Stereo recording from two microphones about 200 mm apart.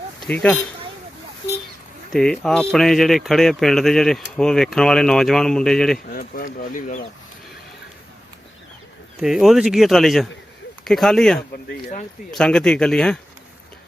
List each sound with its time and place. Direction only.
0.2 s speech: 5° left (ahead or behind)
2.1 s speech: 5° left (ahead or behind)
6.1 s speech: 45° left (ahead or behind)
9.2 s speech: centre (ahead or behind)
11.5 s speech: 45° left (ahead or behind)
12.3 s speech: 5° left (ahead or behind)